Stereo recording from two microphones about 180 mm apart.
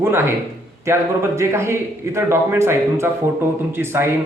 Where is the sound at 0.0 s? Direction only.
15° right (ahead or behind).